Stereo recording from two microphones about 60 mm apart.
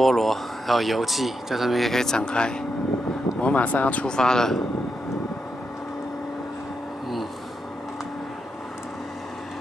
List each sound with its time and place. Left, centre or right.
0.0 s speech: centre